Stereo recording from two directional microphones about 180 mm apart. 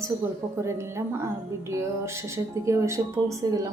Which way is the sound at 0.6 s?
15° right (ahead or behind).